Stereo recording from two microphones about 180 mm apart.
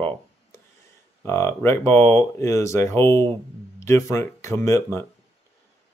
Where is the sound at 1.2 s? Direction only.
15° left (ahead or behind).